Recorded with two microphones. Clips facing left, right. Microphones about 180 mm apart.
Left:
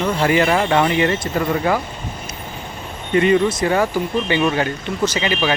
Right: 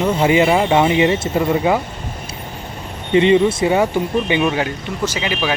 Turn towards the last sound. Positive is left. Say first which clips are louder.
# left 2 dB
turn(degrees=-5)  # may be behind; listen again after turning